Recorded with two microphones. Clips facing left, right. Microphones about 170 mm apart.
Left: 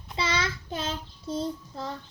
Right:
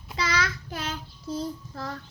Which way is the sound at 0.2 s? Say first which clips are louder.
Right 1 dB; 25° left (ahead or behind).